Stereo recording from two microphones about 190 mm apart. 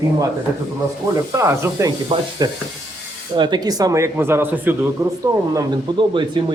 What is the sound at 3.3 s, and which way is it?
A man's voice, 25° right (ahead or behind).